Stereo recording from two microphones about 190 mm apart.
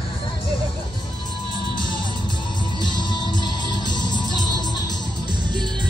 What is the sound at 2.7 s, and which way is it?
Music, 25° left (ahead or behind).